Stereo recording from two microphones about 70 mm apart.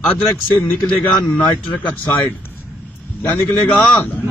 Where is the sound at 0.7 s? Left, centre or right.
Left.